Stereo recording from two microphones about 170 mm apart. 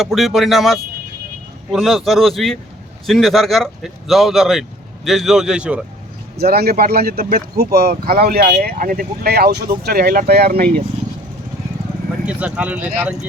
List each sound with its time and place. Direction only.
0.0 s speech: centre (ahead or behind)
6.3 s speech: 65° right (ahead or behind)
12.2 s speech: 5° right (ahead or behind)